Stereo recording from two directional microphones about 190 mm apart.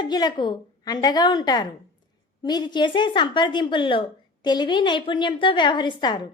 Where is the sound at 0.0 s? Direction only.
20° left (ahead or behind).